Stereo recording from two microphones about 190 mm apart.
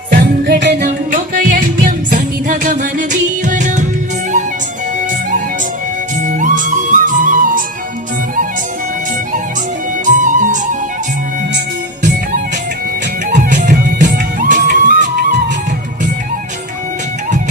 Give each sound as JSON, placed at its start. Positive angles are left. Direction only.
{"t": 0.1, "sound": "music", "side_deg": -50}
{"t": 0.9, "sound": "music", "side_deg": -45}
{"t": 6.2, "sound": "music", "side_deg": -45}
{"t": 10.1, "sound": "music", "side_deg": -40}
{"t": 13.7, "sound": "music", "side_deg": -45}